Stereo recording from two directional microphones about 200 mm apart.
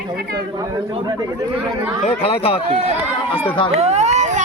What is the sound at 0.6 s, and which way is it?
Speech, 20° right (ahead or behind).